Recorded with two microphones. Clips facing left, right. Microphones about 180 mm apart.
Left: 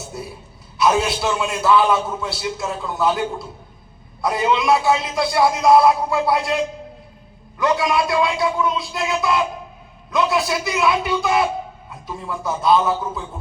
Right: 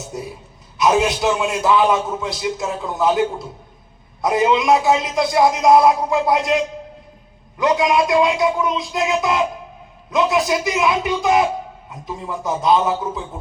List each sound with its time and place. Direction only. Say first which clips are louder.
0.1 s a sound: right 3 dB; 15° right (ahead or behind)
0.8 s a man's voice: right 2 dB; 15° right (ahead or behind)
7.6 s a man's voice: right 2 dB; 20° right (ahead or behind)